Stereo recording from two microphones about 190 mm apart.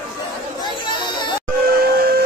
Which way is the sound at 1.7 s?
55° right (ahead or behind).